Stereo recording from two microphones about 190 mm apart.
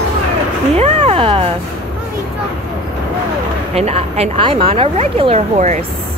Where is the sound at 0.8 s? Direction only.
30° right (ahead or behind).